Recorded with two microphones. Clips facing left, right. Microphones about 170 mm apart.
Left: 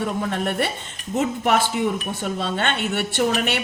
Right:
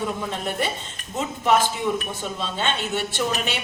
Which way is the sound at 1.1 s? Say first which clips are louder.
Left 1 dB; 60° left (ahead or behind).